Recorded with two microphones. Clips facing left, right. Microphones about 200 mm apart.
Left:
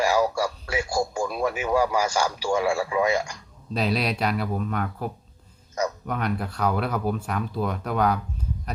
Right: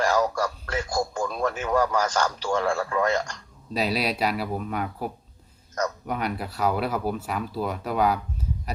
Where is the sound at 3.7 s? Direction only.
5° right (ahead or behind).